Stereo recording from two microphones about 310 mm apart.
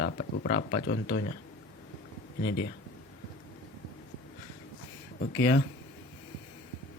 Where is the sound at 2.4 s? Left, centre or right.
Left.